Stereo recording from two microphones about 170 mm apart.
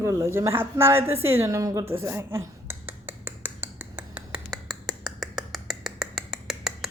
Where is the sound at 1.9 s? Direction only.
15° right (ahead or behind).